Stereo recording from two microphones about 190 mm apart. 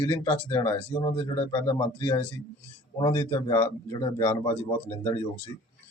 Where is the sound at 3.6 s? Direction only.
30° left (ahead or behind).